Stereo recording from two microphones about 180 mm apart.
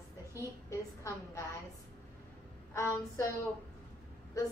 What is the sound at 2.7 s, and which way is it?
Speech, 15° left (ahead or behind).